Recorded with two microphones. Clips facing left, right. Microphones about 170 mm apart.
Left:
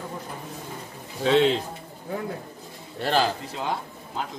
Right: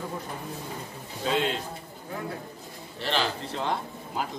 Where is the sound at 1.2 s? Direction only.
90° left.